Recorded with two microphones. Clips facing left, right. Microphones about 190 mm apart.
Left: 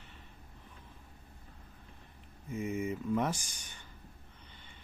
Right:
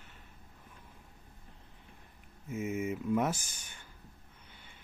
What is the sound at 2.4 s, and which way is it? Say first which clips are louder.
Speech: right 1 dB; 5° right (ahead or behind).